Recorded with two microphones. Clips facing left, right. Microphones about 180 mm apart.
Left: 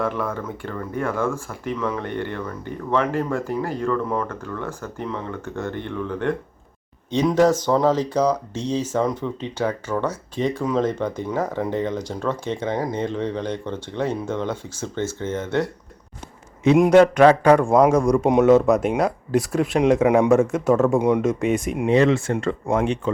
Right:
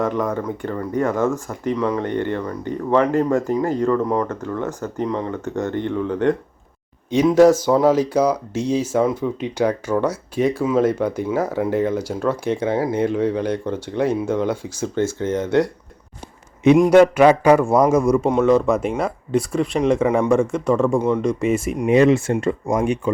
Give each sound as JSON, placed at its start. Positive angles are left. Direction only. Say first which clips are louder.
{"t": 0.0, "sound": "speech", "louder": "right 4 dB", "side_deg": -20}
{"t": 16.9, "sound": "speech", "louder": "right 1 dB", "side_deg": -10}
{"t": 18.3, "sound": "speech", "louder": "left 5 dB", "side_deg": 10}
{"t": 21.0, "sound": "speech", "louder": "left 1 dB", "side_deg": 15}
{"t": 21.2, "sound": "speech", "louder": "right 1 dB", "side_deg": 0}
{"t": 21.8, "sound": "speech", "louder": "right 3 dB", "side_deg": -15}